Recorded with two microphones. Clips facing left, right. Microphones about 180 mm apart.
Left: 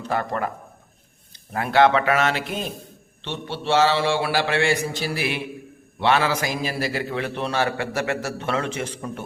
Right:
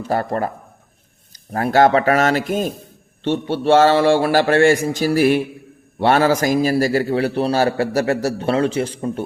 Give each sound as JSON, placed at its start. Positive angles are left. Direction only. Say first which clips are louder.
{"t": 0.1, "sound": "a man's voice", "louder": "right 4 dB", "side_deg": -40}